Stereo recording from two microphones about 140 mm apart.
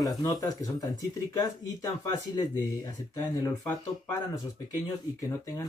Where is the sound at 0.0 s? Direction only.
25° left (ahead or behind).